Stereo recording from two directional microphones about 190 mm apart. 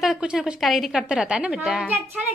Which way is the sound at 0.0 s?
5° right (ahead or behind).